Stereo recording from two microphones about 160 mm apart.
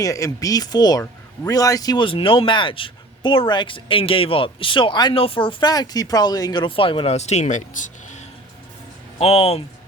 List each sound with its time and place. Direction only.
0.0 s speech: 20° left (ahead or behind); by 8.2 s 50° left (ahead or behind)
9.1 s speech: 40° left (ahead or behind)